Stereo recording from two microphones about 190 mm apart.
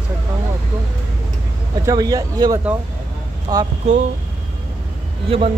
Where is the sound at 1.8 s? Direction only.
20° right (ahead or behind).